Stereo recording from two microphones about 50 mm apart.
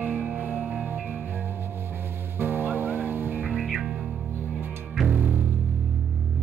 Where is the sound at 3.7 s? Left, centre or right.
Centre.